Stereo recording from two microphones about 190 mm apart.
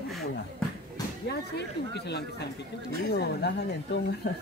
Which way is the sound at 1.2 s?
60° left (ahead or behind).